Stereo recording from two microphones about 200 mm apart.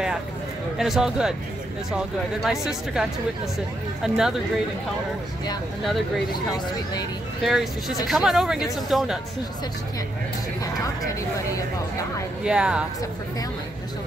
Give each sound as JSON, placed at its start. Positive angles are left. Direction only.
{"t": 0.7, "sound": "speech", "side_deg": 0}
{"t": 6.3, "sound": "speech", "side_deg": 20}
{"t": 7.4, "sound": "speech", "side_deg": 0}
{"t": 12.4, "sound": "speech", "side_deg": -5}